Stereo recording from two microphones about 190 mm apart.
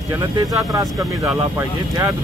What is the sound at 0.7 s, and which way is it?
Speech, 15° right (ahead or behind).